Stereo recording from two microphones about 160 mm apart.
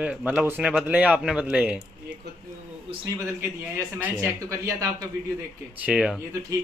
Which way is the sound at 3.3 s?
15° right (ahead or behind).